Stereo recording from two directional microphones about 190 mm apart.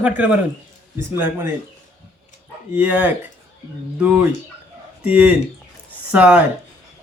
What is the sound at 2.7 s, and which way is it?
Speech, 5° right (ahead or behind).